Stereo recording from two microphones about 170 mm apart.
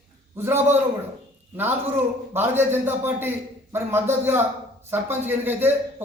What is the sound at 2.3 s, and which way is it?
A man's voice, 10° right (ahead or behind).